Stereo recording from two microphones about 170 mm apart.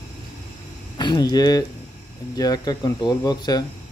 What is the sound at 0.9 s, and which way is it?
Speech, 25° left (ahead or behind).